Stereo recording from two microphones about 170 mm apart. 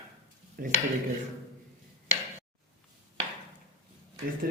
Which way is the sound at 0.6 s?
60° right (ahead or behind).